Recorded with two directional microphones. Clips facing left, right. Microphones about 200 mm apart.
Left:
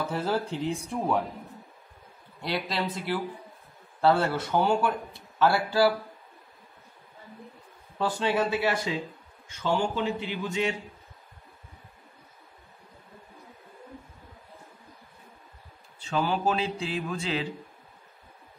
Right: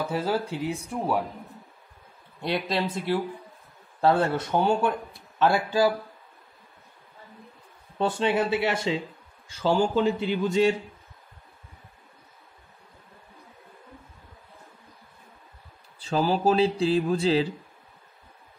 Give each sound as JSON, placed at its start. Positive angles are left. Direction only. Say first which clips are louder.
{"t": 0.0, "sound": "speech", "louder": "right 2 dB", "side_deg": -10}
{"t": 2.4, "sound": "speech", "louder": "right 3 dB", "side_deg": -25}
{"t": 8.0, "sound": "speech", "louder": "right 2 dB", "side_deg": -20}
{"t": 9.5, "sound": "speech", "louder": "right 4 dB", "side_deg": -35}
{"t": 16.0, "sound": "speech", "louder": "right 4 dB", "side_deg": -35}